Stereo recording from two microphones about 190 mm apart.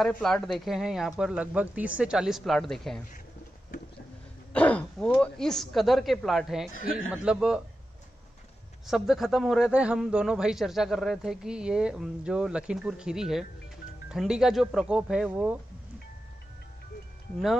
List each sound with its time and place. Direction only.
0.0 s a man's voice: centre (ahead or behind)
4.5 s speech: 5° left (ahead or behind)
6.7 s a man's voice: 45° left (ahead or behind)
7.2 s a man's voice: 5° right (ahead or behind)
8.8 s a man's voice: centre (ahead or behind)